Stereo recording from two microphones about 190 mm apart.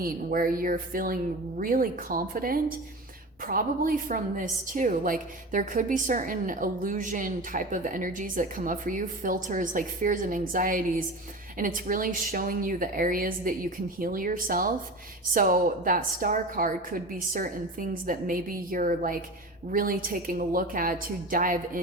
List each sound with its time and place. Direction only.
0.0 s a woman's voice: 50° right (ahead or behind)